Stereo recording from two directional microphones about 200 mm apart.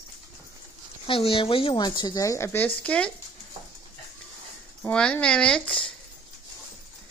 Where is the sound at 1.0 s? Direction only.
25° left (ahead or behind); by 3.1 s 5° left (ahead or behind).